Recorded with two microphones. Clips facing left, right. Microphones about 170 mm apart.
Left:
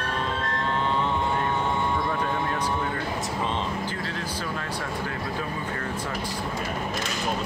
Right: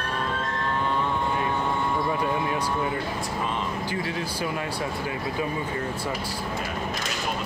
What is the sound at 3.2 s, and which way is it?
Speech, 25° left (ahead or behind).